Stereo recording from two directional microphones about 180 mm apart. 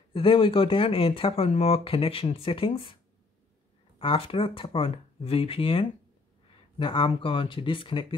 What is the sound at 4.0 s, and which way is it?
Speech, 30° left (ahead or behind).